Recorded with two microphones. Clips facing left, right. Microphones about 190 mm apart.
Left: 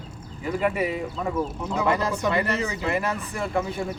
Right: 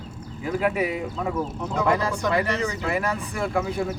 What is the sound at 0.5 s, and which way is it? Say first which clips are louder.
Speech: right 1 dB; 5° right (ahead or behind).